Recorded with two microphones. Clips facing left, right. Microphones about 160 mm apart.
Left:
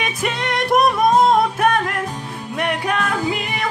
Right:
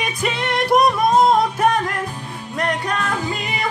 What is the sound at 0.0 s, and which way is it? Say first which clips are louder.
Music: even; centre (ahead or behind).